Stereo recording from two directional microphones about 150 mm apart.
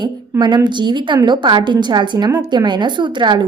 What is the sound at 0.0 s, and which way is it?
A woman's voice, 30° right (ahead or behind).